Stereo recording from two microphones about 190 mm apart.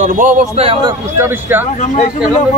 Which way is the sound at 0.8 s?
10° right (ahead or behind).